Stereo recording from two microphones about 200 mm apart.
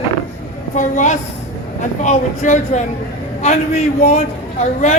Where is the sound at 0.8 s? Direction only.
40° left (ahead or behind).